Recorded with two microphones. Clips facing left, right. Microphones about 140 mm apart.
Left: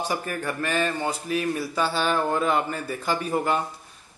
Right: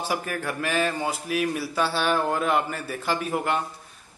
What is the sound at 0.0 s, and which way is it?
A man's voice, 5° right (ahead or behind).